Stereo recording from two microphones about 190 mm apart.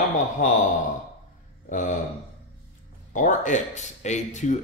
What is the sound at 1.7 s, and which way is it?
Speech, 40° left (ahead or behind).